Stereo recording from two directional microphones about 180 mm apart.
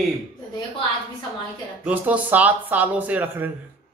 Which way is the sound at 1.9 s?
10° right (ahead or behind).